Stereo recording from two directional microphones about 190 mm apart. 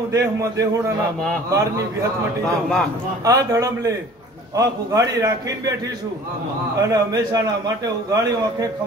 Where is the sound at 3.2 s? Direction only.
20° right (ahead or behind).